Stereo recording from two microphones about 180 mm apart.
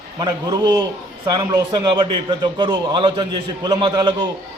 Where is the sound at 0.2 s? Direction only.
20° right (ahead or behind).